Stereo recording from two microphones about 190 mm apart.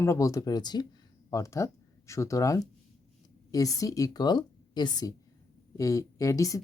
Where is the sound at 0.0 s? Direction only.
15° left (ahead or behind).